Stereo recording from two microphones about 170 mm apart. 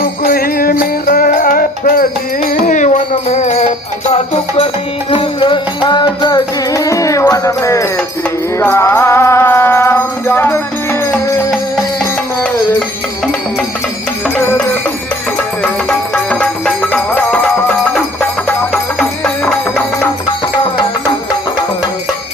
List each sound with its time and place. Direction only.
0.3 s music: 60° left (ahead or behind); by 10.6 s 15° left (ahead or behind)
15.6 s music: 5° left (ahead or behind)